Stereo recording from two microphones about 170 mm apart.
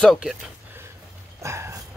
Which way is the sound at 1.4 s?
15° right (ahead or behind).